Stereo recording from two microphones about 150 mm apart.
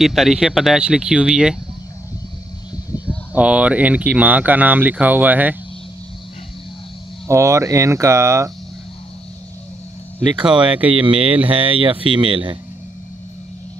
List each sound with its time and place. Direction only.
0.0 s speech: centre (ahead or behind)
3.3 s speech: 10° right (ahead or behind)
7.2 s speech: 20° right (ahead or behind)
10.5 s speech: 35° right (ahead or behind)